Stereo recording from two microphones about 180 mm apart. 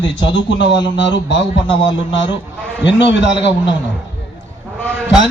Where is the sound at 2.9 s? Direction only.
80° left.